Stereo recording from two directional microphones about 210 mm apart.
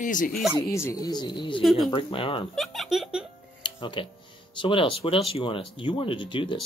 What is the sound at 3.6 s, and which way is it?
Music, 25° left (ahead or behind).